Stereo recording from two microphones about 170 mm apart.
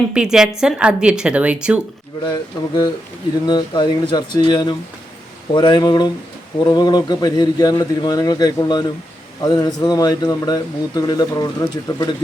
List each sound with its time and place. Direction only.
0.1 s a woman's voice: 5° right (ahead or behind)
2.2 s speech: 25° left (ahead or behind)